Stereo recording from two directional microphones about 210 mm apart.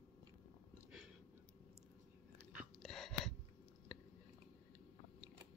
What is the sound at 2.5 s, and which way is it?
Chewing, centre (ahead or behind).